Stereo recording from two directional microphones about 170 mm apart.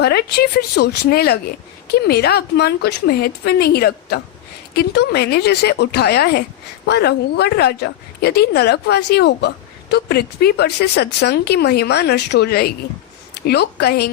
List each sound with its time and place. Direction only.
0.0 s speech: 70° left (ahead or behind)
9.9 s a woman's voice: 70° left (ahead or behind)